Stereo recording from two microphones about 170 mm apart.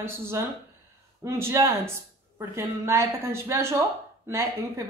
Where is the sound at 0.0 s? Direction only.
15° right (ahead or behind).